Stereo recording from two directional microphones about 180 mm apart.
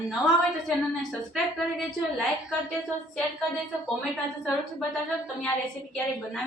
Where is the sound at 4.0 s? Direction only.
Centre (ahead or behind).